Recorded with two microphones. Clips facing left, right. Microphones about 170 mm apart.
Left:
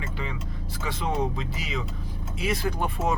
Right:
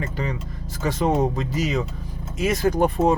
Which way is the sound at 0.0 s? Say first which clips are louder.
Right 6 dB; 40° right (ahead or behind).